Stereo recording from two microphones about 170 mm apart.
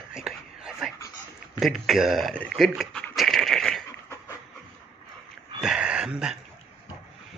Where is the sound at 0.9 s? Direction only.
20° left (ahead or behind).